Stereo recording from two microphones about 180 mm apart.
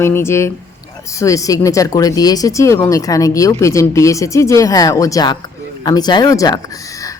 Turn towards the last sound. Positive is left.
turn(degrees=20)  # may be behind; listen again after turning